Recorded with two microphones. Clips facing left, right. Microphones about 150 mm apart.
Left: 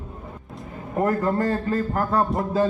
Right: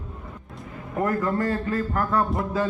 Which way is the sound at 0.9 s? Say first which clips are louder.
Left 2 dB; 25° left (ahead or behind).